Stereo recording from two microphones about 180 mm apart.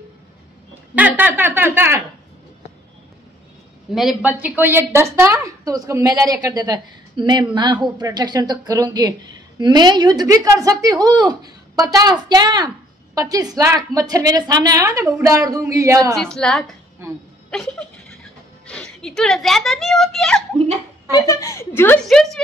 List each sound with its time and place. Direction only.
0.9 s a woman's voice: 10° right (ahead or behind)
3.9 s a woman's voice: centre (ahead or behind); by 16.2 s 15° right (ahead or behind)
16.2 s a woman's voice: 5° left (ahead or behind)
17.5 s a sound: 5° left (ahead or behind)
18.7 s speech: 5° left (ahead or behind)
21.1 s a woman's voice: 20° left (ahead or behind)
22.0 s a woman's voice: centre (ahead or behind)